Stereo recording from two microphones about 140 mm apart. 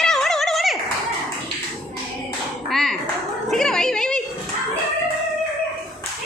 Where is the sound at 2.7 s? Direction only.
Centre (ahead or behind).